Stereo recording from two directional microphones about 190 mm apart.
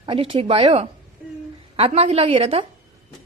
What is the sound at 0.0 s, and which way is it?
A woman's voice, 30° right (ahead or behind).